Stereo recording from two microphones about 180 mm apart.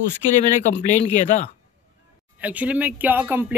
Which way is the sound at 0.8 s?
40° left (ahead or behind).